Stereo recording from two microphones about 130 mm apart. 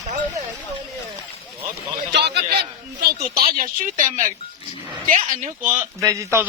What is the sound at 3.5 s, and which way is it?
Speech, 90° right.